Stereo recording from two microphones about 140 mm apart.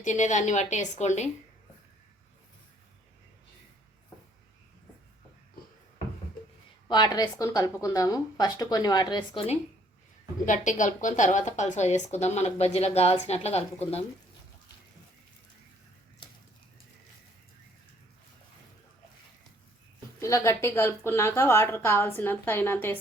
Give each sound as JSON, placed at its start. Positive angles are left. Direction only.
{"t": 0.0, "sound": "a woman's voice", "side_deg": 60}
{"t": 6.8, "sound": "speech", "side_deg": 30}
{"t": 10.4, "sound": "a woman's voice", "side_deg": 65}
{"t": 20.1, "sound": "a woman's voice", "side_deg": 20}